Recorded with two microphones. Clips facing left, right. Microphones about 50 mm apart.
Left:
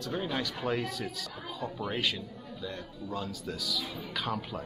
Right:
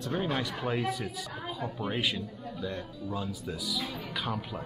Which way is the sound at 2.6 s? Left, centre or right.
Centre.